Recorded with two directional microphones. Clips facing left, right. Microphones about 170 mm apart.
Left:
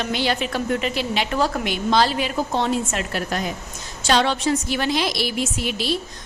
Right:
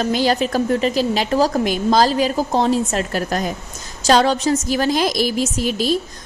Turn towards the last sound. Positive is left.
turn(degrees=-40)  # may be behind; listen again after turning